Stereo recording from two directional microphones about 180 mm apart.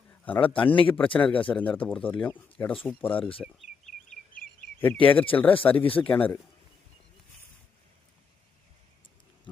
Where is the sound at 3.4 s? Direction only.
Centre (ahead or behind).